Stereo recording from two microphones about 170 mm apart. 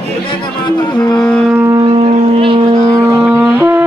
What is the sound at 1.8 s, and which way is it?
Foghorn, 35° right (ahead or behind).